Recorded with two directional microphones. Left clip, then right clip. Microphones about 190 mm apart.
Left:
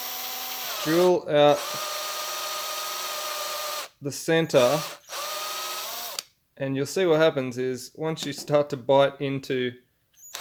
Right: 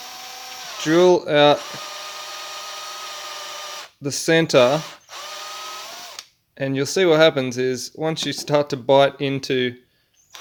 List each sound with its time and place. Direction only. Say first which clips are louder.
0.0 s tools: left 1 dB; 35° left (ahead or behind)
0.9 s speech: right 6 dB; 20° right (ahead or behind)
1.9 s a sound: left 2 dB; 30° left (ahead or behind)
4.0 s speech: right 6 dB; 20° right (ahead or behind)
5.1 s drill: left 2 dB; 30° left (ahead or behind)
6.6 s speech: right 6 dB; 20° right (ahead or behind)